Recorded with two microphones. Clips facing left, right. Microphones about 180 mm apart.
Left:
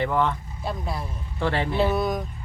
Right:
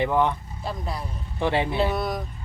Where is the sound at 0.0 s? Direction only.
15° right (ahead or behind).